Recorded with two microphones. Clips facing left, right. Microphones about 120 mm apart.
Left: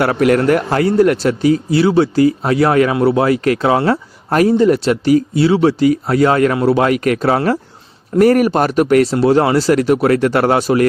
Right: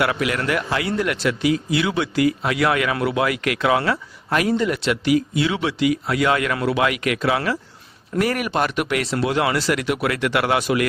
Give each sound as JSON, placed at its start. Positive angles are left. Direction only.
{"t": 0.0, "sound": "speech", "side_deg": 45}